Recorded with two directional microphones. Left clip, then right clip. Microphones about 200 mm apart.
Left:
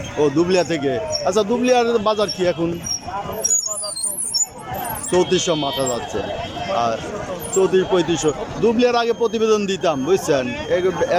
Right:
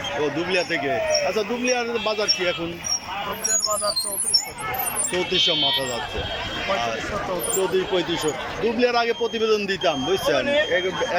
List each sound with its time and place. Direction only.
0.2 s a man's voice: 25° left (ahead or behind)
5.1 s a man's voice: 20° left (ahead or behind)
7.6 s a man's voice: 15° left (ahead or behind)